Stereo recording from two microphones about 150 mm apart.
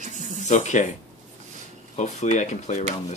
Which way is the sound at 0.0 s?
55° right (ahead or behind).